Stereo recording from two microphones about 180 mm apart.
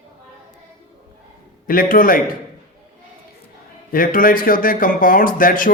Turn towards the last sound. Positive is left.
turn(degrees=50)  # may be behind; listen again after turning